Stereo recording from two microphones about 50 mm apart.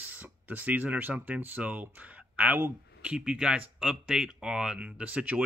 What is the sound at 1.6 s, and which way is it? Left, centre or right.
Speech, centre.